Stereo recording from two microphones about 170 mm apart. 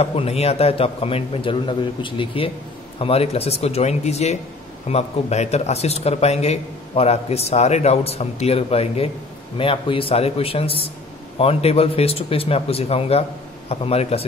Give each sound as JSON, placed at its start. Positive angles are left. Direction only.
{"t": 0.0, "sound": "a man's voice", "side_deg": 35}